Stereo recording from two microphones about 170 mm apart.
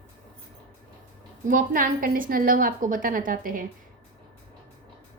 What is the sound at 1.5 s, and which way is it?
A woman's voice, 50° right (ahead or behind).